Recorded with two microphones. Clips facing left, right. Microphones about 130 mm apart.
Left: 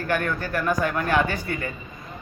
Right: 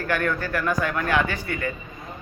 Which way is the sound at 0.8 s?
35° left (ahead or behind).